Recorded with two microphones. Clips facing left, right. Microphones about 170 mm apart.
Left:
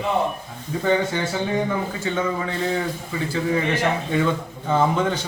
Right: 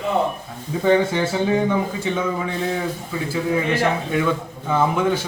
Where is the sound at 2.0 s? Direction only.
10° right (ahead or behind).